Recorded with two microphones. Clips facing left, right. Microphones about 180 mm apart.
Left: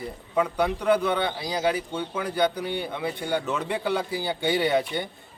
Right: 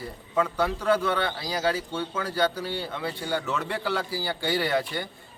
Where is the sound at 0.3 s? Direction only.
15° left (ahead or behind).